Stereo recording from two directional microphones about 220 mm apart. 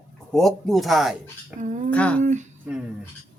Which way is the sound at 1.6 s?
35° right (ahead or behind).